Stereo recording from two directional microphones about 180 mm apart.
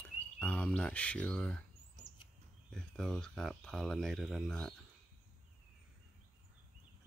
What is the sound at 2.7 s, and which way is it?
Speech, 5° left (ahead or behind).